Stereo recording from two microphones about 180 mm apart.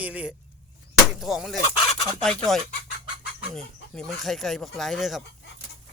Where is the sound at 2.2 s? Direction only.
5° left (ahead or behind).